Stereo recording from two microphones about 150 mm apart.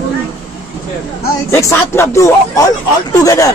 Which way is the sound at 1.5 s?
20° left (ahead or behind).